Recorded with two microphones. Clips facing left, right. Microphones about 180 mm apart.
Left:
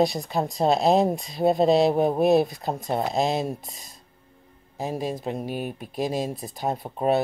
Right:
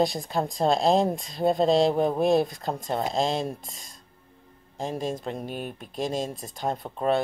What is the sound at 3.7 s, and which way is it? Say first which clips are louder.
Speech: left 1 dB; 50° right (ahead or behind).